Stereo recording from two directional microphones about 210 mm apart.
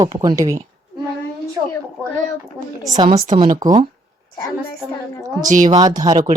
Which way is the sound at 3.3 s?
35° right (ahead or behind).